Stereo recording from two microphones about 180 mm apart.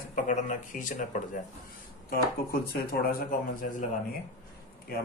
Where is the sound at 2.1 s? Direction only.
60° left (ahead or behind).